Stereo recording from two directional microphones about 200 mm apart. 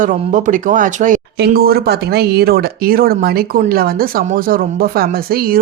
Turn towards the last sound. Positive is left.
turn(degrees=-50)  # may be behind; listen again after turning